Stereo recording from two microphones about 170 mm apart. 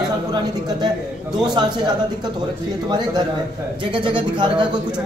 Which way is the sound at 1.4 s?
25° right (ahead or behind).